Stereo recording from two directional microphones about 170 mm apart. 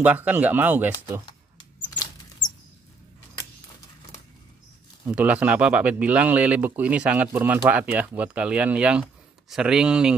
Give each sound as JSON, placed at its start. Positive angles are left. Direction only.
{"t": 0.0, "sound": "speech", "side_deg": -10}
{"t": 1.2, "sound": "mouse", "side_deg": 25}
{"t": 5.0, "sound": "speech", "side_deg": -10}